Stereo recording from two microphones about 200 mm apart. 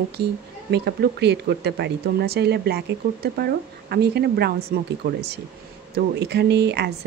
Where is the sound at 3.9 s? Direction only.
55° right (ahead or behind).